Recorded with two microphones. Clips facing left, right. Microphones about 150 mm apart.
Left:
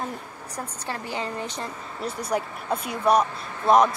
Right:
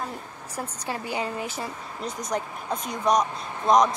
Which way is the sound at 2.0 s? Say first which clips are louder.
Left 2 dB; 10° left (ahead or behind).